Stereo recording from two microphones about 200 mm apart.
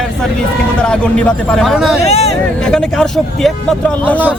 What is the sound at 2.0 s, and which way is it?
Speech, 30° left (ahead or behind).